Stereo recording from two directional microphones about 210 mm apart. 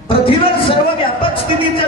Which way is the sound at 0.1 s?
25° left (ahead or behind).